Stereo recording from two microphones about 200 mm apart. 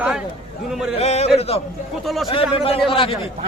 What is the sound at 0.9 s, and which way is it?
A man's voice, 30° left (ahead or behind).